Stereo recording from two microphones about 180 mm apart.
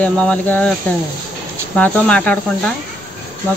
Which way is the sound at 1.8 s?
5° left (ahead or behind).